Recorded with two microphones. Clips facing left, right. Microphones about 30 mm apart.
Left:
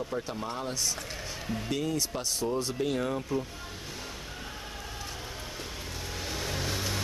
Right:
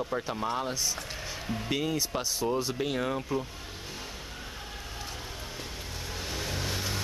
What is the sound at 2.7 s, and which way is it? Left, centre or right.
Speech, centre.